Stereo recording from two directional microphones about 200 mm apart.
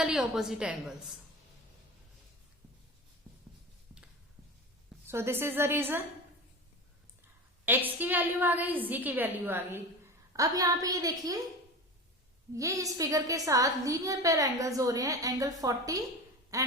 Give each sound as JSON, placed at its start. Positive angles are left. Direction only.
{"t": 0.0, "sound": "a woman's voice", "side_deg": -5}
{"t": 5.0, "sound": "a woman's voice", "side_deg": -10}
{"t": 7.6, "sound": "a woman's voice", "side_deg": -10}
{"t": 12.5, "sound": "a woman's voice", "side_deg": -15}
{"t": 16.5, "sound": "quack", "side_deg": -15}